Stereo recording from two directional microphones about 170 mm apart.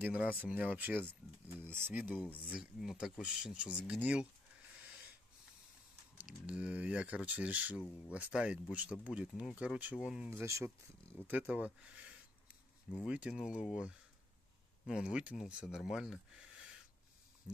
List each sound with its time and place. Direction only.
0.0 s speech: 10° right (ahead or behind)
2.2 s speech: 10° left (ahead or behind)
2.5 s speech: centre (ahead or behind)
6.1 s speech: 5° right (ahead or behind)
10.4 s speech: 15° right (ahead or behind)